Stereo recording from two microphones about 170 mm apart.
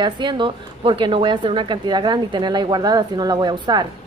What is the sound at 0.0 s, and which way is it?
A woman's voice, 25° right (ahead or behind).